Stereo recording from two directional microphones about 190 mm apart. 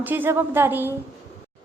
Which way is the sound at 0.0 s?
10° right (ahead or behind).